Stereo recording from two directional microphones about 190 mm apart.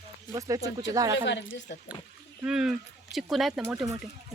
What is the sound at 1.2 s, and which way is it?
Speech, 65° left (ahead or behind).